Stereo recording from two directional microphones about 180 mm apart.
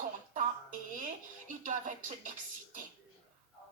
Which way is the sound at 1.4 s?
45° right (ahead or behind).